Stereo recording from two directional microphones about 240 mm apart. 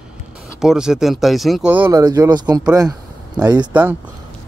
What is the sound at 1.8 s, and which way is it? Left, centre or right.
Speech, centre.